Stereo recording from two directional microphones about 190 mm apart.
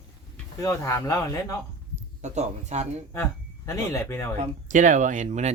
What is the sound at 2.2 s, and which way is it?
Speech, 35° right (ahead or behind).